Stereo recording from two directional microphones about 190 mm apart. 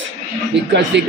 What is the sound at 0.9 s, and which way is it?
Speech, 65° right (ahead or behind).